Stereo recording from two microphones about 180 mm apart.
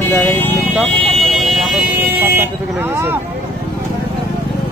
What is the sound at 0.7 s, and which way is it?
Vehicle, centre (ahead or behind).